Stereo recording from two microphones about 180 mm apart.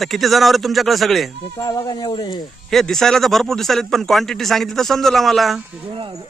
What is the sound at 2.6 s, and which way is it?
A man's voice, centre (ahead or behind).